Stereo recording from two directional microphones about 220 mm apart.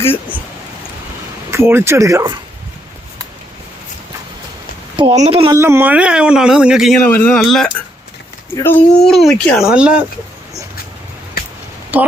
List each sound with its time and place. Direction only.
0.1 s speech: 5° left (ahead or behind)
1.5 s speech: 10° right (ahead or behind)
4.9 s speech: 25° right (ahead or behind)
5.5 s a man's voice: 10° right (ahead or behind)
11.9 s speech: 10° right (ahead or behind)